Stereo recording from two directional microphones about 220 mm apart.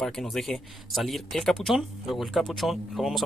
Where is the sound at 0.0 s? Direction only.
Centre (ahead or behind).